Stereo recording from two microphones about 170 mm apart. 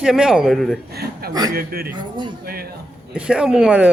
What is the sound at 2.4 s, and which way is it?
Speech, 60° right (ahead or behind).